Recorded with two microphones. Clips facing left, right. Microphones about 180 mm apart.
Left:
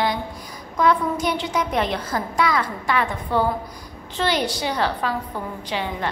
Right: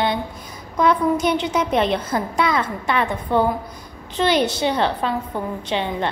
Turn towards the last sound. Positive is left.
turn(degrees=-25)  # may be behind; listen again after turning